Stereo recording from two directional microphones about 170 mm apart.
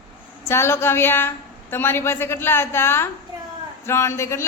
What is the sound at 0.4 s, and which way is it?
A woman's voice, 15° left (ahead or behind).